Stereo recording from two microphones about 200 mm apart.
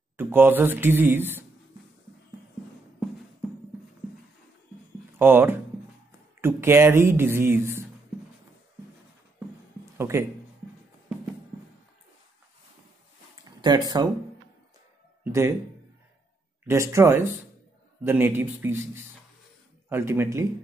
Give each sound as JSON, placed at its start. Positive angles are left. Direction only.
{"t": 0.2, "sound": "speech", "side_deg": -10}
{"t": 5.2, "sound": "speech", "side_deg": -10}
{"t": 9.9, "sound": "a sound", "side_deg": -15}
{"t": 13.4, "sound": "a sound", "side_deg": -20}
{"t": 16.6, "sound": "speech", "side_deg": -15}
{"t": 19.9, "sound": "speech", "side_deg": -10}